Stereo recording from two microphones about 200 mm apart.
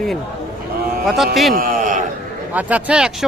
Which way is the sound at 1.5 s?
45° right (ahead or behind).